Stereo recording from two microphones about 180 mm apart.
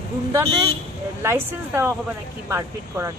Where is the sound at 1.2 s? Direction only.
15° right (ahead or behind).